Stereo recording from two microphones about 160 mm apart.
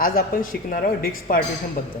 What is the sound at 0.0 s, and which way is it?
A man's voice, 60° left (ahead or behind).